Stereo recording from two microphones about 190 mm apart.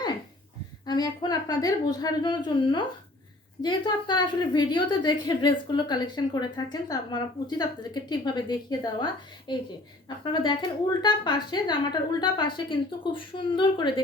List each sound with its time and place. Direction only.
0.9 s a woman's voice: 20° left (ahead or behind)